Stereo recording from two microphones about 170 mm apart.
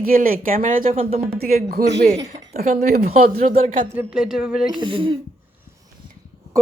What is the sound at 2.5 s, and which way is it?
Speech, 55° right (ahead or behind).